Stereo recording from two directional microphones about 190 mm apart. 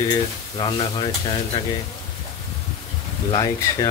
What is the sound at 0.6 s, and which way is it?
Speech, 25° left (ahead or behind).